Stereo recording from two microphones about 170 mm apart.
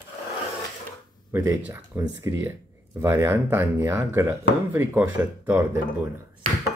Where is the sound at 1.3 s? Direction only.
15° right (ahead or behind).